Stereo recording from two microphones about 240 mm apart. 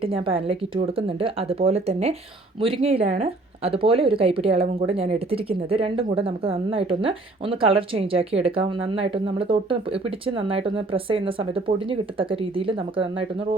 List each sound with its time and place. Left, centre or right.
0.0 s speech: right